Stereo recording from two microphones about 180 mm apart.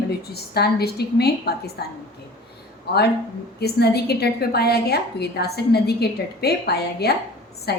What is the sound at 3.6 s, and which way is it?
A woman's voice, 60° left (ahead or behind).